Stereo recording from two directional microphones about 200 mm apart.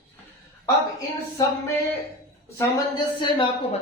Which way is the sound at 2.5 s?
15° left (ahead or behind).